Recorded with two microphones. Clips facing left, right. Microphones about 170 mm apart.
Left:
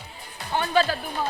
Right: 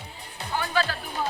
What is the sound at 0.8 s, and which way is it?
Music, 20° left (ahead or behind).